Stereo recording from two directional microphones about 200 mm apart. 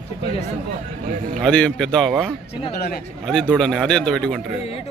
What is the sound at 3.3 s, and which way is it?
Speech, 5° left (ahead or behind).